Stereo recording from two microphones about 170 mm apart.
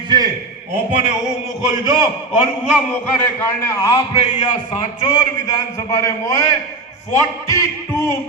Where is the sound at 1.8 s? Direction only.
20° right (ahead or behind).